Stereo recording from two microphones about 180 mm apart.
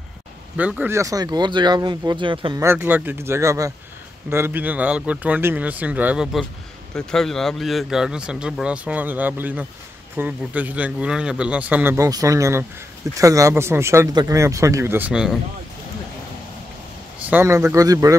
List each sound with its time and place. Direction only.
0.6 s speech: 10° right (ahead or behind); by 2.6 s 30° right (ahead or behind)
2.6 s speech: 10° right (ahead or behind)
6.9 s a man's voice: 5° left (ahead or behind)
17.3 s speech: 15° right (ahead or behind)